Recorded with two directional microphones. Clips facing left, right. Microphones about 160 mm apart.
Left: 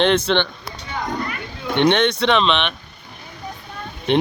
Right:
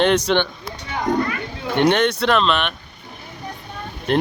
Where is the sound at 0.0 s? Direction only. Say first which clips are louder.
Even; 10° right (ahead or behind).